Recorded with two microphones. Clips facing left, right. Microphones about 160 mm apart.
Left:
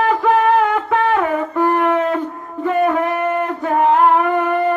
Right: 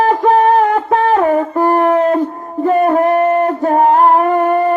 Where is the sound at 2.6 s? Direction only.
40° right (ahead or behind).